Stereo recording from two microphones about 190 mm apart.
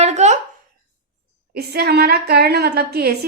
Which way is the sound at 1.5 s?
55° right (ahead or behind).